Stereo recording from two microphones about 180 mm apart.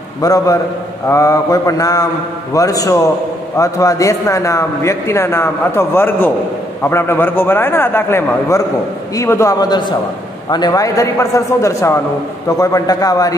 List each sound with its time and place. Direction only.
0.2 s mantra: 20° left (ahead or behind)
3.5 s a man's voice: 15° left (ahead or behind)
9.1 s mantra: 15° left (ahead or behind)
10.5 s a man's voice: 20° left (ahead or behind)
12.4 s mantra: 20° left (ahead or behind)